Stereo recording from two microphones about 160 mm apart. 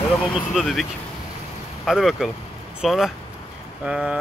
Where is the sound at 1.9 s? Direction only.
Centre (ahead or behind).